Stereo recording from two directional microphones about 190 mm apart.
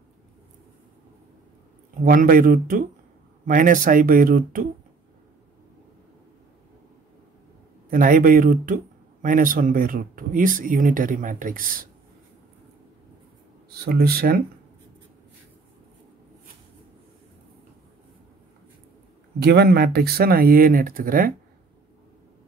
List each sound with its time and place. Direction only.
2.0 s speech: 45° right (ahead or behind)
7.9 s speech: 45° right (ahead or behind)
13.7 s speech: 55° right (ahead or behind)
19.4 s speech: 55° right (ahead or behind)